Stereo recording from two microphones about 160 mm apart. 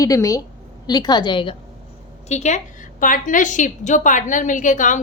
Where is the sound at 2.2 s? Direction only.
45° left (ahead or behind).